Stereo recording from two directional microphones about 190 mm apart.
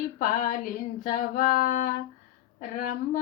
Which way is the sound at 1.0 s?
45° left (ahead or behind).